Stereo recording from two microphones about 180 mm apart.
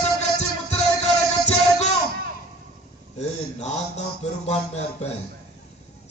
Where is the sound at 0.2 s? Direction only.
40° left (ahead or behind).